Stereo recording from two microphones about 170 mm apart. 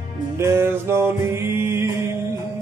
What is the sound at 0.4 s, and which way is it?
Music, 15° right (ahead or behind).